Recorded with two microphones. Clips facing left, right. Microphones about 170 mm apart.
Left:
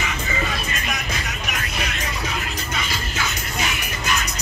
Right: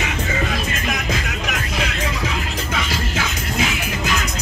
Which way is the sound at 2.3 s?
90° right.